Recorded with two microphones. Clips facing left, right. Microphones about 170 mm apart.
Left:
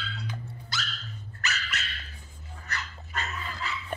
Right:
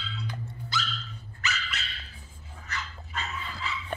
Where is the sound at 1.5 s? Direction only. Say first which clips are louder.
Left 1 dB; 45° left (ahead or behind).